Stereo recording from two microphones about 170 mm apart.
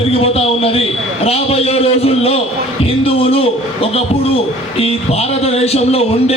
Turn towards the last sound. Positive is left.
turn(degrees=35)  # may be behind; listen again after turning